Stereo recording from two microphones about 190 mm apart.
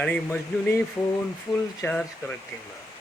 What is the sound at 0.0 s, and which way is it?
Speech, 5° left (ahead or behind).